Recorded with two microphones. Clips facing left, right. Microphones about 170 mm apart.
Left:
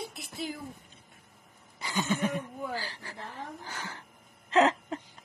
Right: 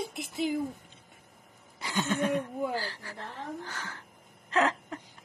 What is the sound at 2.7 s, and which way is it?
Speech, 15° left (ahead or behind).